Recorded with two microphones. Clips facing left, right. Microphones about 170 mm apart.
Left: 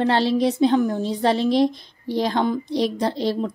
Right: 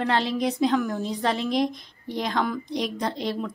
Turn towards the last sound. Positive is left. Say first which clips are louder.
# left 5 dB
turn(degrees=35)  # may be behind; listen again after turning